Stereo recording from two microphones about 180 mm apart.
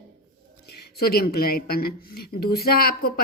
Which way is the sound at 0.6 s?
65° left (ahead or behind).